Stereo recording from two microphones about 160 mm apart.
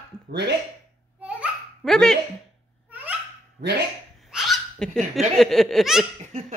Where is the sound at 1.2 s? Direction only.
10° right (ahead or behind).